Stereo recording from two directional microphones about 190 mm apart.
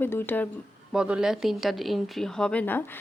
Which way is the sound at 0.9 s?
5° right (ahead or behind).